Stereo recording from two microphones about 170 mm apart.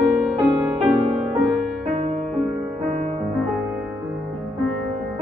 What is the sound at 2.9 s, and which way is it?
Music, 40° right (ahead or behind).